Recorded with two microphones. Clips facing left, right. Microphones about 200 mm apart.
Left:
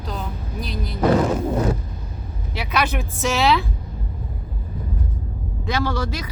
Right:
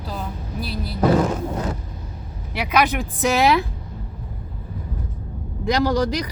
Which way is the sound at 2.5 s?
15° right (ahead or behind).